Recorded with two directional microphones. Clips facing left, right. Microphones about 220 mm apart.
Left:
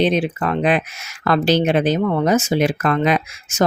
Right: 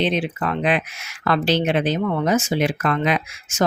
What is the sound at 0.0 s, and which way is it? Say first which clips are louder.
Speech: left 4 dB; 45° left (ahead or behind).